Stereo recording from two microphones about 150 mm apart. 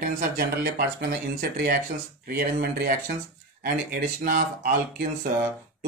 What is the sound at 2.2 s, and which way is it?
Speech, 80° right.